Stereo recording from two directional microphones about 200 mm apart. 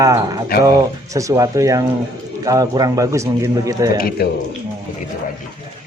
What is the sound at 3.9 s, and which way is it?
Speech, 50° left (ahead or behind).